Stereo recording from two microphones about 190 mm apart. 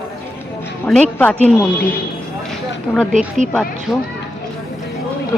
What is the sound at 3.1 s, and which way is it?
Speech, 40° right (ahead or behind).